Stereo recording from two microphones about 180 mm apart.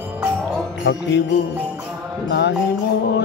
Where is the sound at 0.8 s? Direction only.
80° left.